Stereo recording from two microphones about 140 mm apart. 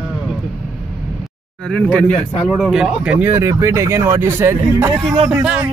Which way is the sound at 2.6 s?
Centre (ahead or behind).